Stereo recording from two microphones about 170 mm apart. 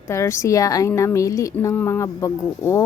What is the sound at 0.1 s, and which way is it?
A woman's voice, 15° left (ahead or behind).